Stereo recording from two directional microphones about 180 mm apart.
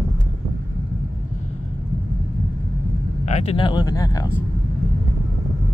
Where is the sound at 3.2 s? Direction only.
35° left (ahead or behind); by 4.3 s 20° left (ahead or behind).